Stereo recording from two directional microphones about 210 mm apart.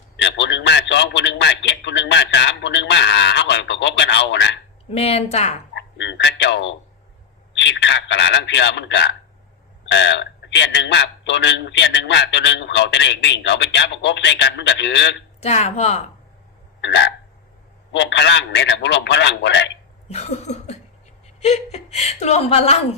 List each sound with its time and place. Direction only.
0.2 s a sound: 55° left (ahead or behind)
4.9 s a woman's voice: 30° left (ahead or behind)
5.7 s a sound: 55° left (ahead or behind)
7.5 s a man's voice: 55° left (ahead or behind)
15.4 s a woman's voice: 30° left (ahead or behind)
16.8 s a man's voice: 55° left (ahead or behind)
20.1 s a woman's voice: 30° left (ahead or behind)